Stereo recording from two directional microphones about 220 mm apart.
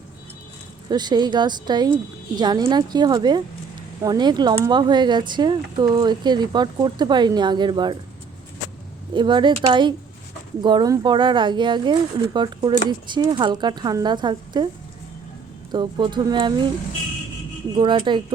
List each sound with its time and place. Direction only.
0.9 s speech: 20° right (ahead or behind)
9.1 s speech: 20° right (ahead or behind)
15.7 s speech: 20° right (ahead or behind)
17.7 s speech: 20° right (ahead or behind)